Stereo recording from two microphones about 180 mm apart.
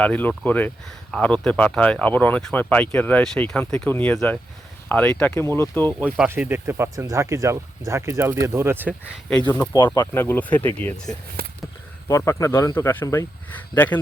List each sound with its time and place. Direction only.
0.0 s speech: 10° left (ahead or behind)
6.1 s speech: 10° right (ahead or behind)
8.9 s speech: 5° left (ahead or behind)
9.7 s speech: 25° left (ahead or behind)
10.2 s speech: 10° left (ahead or behind)
11.4 s a sound: 55° right (ahead or behind)
12.0 s speech: 15° left (ahead or behind)